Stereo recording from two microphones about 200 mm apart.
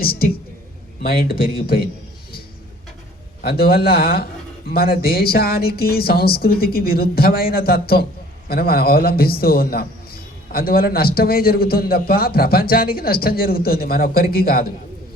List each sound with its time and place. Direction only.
0.0 s a woman's voice: 50° left (ahead or behind)
3.4 s a man's voice: 50° left (ahead or behind)